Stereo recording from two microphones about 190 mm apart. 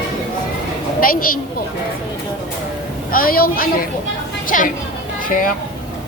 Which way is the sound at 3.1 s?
50° left (ahead or behind).